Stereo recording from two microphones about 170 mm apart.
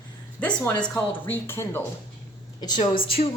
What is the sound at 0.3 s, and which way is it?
A woman's voice, 5° left (ahead or behind).